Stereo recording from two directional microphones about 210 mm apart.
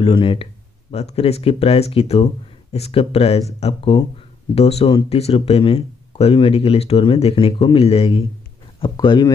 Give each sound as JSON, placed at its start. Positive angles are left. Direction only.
{"t": 0.0, "sound": "speech", "side_deg": 25}